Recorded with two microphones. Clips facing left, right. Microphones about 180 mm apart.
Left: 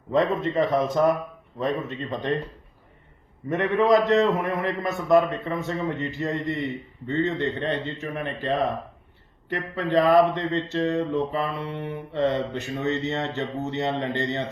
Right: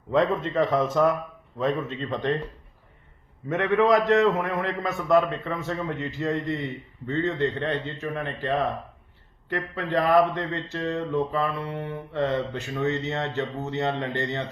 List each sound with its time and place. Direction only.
0.5 s a man's voice: 20° left (ahead or behind)
3.5 s a man's voice: 15° left (ahead or behind)